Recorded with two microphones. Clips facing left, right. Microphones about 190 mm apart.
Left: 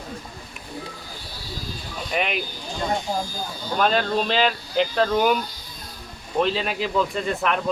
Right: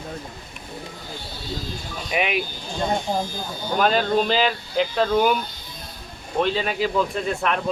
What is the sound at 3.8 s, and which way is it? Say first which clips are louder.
Speech: right 2 dB; 5° right (ahead or behind).